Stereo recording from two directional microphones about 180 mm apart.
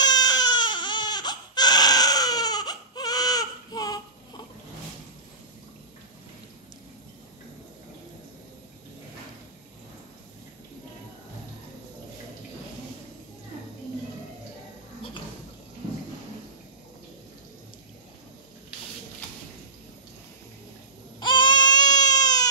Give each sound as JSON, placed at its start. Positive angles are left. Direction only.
{"t": 0.0, "sound": "baby cry", "side_deg": 20}
{"t": 21.2, "sound": "baby cry", "side_deg": 25}